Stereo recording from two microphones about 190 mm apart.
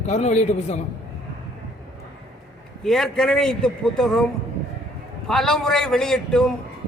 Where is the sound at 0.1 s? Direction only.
35° left (ahead or behind).